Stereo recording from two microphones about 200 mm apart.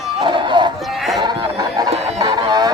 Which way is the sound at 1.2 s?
20° right (ahead or behind).